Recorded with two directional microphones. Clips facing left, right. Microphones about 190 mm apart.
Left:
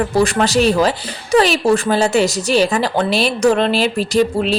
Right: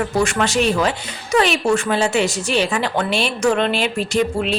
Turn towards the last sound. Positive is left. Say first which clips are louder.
# left 4 dB
turn(degrees=35)  # may be behind; listen again after turning